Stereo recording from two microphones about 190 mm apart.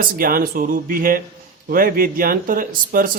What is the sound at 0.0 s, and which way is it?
Speech, 50° right (ahead or behind).